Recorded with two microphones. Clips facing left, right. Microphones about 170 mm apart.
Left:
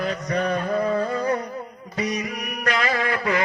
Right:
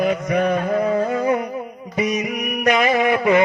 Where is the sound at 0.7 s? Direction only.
20° right (ahead or behind).